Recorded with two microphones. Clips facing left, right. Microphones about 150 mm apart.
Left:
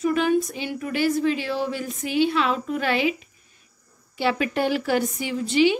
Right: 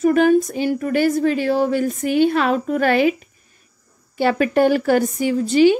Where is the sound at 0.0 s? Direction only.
45° right (ahead or behind).